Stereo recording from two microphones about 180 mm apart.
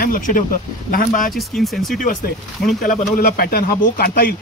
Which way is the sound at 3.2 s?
55° left (ahead or behind).